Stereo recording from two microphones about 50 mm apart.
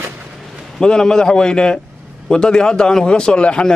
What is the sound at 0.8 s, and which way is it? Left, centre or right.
A man's voice, centre.